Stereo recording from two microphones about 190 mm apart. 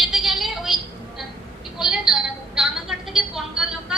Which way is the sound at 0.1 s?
Centre (ahead or behind).